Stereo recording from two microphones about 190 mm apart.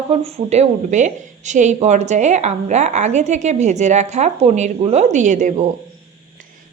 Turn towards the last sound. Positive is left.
turn(degrees=-40)  # may be behind; listen again after turning